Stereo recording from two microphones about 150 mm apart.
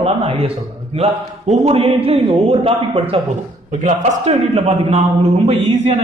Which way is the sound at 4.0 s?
50° right (ahead or behind).